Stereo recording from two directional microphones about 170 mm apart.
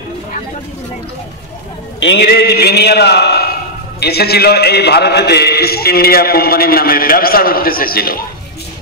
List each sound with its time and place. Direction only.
2.0 s a man's voice: 85° left; by 8.2 s 60° left (ahead or behind)